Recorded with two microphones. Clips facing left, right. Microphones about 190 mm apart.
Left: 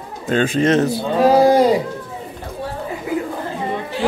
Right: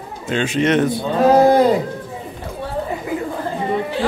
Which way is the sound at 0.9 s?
10° left (ahead or behind).